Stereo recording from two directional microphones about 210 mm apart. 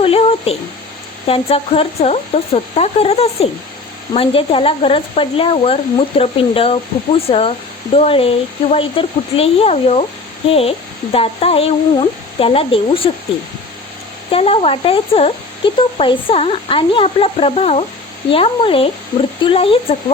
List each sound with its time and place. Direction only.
0.0 s a sound: 25° left (ahead or behind)
1.3 s speech: 30° left (ahead or behind)
14.3 s speech: 25° left (ahead or behind)